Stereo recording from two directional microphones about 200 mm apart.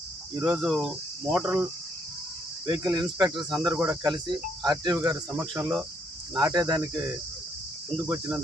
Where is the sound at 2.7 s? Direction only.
20° right (ahead or behind).